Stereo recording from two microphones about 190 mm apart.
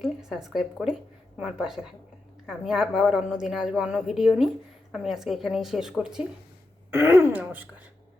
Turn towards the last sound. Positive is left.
turn(degrees=-10)  # may be behind; listen again after turning